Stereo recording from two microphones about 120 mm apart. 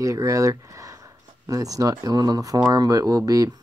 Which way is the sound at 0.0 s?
30° right (ahead or behind).